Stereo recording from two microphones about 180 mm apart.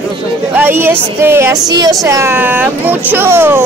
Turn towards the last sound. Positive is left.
turn(degrees=-10)  # may be behind; listen again after turning